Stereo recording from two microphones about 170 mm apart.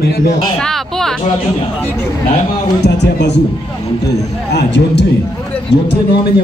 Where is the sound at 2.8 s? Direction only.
85° left.